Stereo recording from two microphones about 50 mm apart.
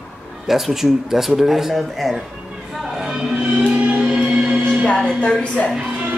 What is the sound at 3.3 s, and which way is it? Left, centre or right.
Music, centre.